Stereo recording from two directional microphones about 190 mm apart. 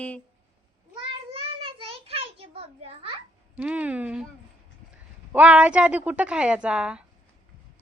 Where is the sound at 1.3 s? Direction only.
30° right (ahead or behind).